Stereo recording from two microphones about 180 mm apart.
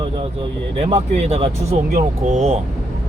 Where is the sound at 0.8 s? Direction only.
35° right (ahead or behind).